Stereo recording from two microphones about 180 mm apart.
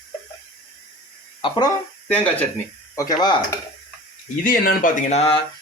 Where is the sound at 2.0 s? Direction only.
5° left (ahead or behind).